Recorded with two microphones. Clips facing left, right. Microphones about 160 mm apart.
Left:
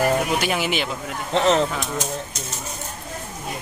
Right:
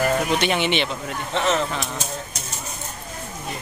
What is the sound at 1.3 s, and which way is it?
Speech, 35° left (ahead or behind).